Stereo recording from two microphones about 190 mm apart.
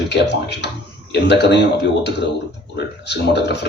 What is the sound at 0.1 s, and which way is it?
Speech, 65° left (ahead or behind).